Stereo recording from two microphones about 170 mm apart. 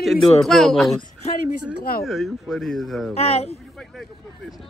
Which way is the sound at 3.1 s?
35° left (ahead or behind).